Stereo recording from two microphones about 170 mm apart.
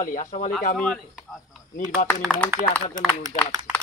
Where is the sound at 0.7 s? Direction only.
5° left (ahead or behind).